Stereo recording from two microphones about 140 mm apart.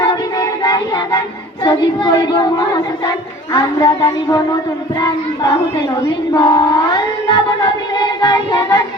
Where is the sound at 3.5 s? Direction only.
30° left (ahead or behind).